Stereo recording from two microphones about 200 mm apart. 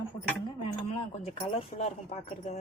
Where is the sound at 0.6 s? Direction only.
30° left (ahead or behind).